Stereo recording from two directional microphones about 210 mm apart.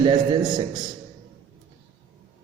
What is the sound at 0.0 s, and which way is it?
Speech, 20° right (ahead or behind).